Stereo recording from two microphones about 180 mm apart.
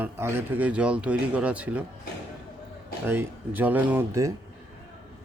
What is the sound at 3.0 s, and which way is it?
Speech, 10° right (ahead or behind).